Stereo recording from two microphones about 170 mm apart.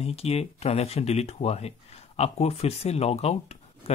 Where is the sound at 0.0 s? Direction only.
35° left (ahead or behind).